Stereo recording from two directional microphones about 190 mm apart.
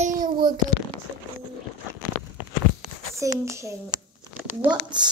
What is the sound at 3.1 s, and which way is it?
A child's voice, 15° right (ahead or behind).